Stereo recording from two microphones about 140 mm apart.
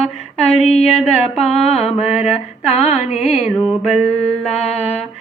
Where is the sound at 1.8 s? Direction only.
50° left (ahead or behind).